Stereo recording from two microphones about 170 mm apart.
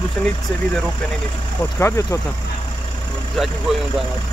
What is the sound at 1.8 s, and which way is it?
Speech, 15° left (ahead or behind).